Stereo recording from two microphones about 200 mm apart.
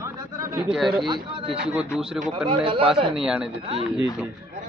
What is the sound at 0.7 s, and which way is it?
A man's voice, centre (ahead or behind).